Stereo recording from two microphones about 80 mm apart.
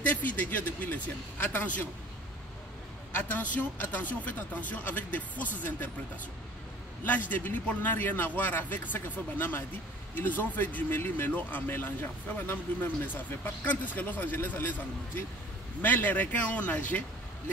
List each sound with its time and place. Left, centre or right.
0.0 s speech: left
3.1 s speech: left
7.1 s speech: left
15.8 s speech: left